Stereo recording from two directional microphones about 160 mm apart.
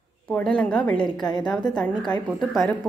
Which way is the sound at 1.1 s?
25° left (ahead or behind).